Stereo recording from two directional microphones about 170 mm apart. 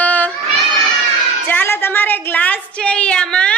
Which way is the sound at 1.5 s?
10° left (ahead or behind).